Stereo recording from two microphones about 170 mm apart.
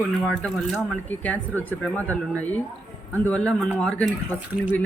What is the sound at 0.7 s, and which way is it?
Speech, 5° left (ahead or behind).